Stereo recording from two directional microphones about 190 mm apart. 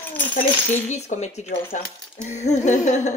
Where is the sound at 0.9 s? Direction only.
35° left (ahead or behind).